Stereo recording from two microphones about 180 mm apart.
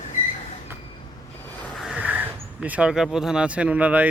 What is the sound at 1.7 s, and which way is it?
Speech, 5° right (ahead or behind).